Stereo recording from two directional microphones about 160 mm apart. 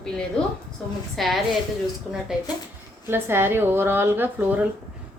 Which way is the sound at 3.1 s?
15° right (ahead or behind).